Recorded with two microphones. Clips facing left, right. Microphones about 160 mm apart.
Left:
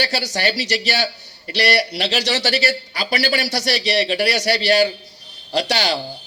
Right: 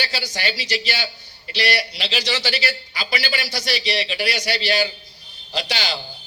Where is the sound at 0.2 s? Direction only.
70° left (ahead or behind).